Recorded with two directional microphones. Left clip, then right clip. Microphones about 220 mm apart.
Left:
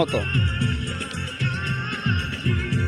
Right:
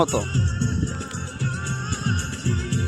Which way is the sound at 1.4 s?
10° right (ahead or behind).